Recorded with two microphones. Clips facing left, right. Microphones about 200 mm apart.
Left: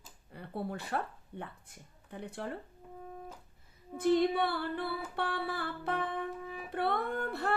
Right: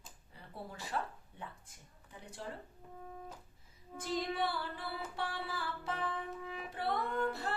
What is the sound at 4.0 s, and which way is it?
Music, 60° left (ahead or behind).